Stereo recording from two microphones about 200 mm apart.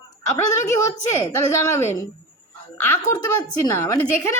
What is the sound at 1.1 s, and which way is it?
A woman's voice, 15° left (ahead or behind).